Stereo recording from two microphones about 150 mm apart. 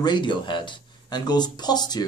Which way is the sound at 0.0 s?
30° left (ahead or behind).